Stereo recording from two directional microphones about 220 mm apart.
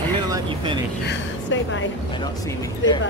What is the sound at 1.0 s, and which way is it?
Speech, 60° left (ahead or behind).